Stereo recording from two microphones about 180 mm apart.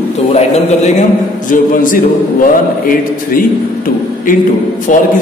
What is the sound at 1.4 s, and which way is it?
A man's voice, 50° left (ahead or behind).